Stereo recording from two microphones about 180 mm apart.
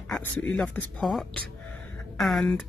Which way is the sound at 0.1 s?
5° left (ahead or behind).